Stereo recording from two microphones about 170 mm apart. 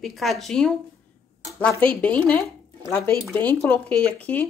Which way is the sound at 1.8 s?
10° left (ahead or behind).